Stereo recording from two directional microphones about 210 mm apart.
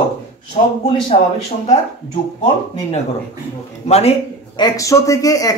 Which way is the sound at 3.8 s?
30° left (ahead or behind).